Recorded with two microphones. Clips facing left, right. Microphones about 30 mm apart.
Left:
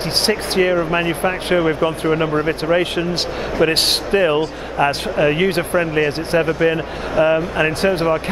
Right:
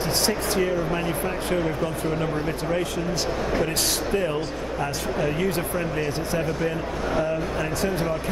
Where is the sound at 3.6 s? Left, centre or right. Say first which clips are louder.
Left 8 dB; left.